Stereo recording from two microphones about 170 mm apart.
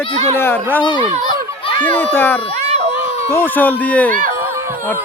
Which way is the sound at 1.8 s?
10° left (ahead or behind).